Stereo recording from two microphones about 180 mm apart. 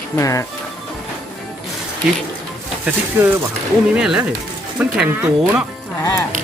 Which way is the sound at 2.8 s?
10° right (ahead or behind).